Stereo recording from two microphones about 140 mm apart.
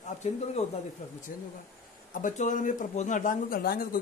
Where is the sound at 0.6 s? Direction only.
50° left (ahead or behind).